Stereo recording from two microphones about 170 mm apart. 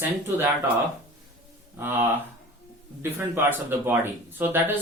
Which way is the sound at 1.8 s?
10° right (ahead or behind).